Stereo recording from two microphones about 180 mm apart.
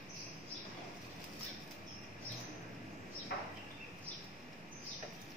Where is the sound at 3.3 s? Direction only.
60° left (ahead or behind).